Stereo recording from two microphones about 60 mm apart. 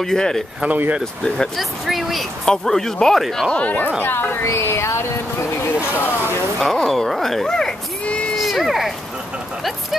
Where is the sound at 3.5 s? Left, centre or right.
Left.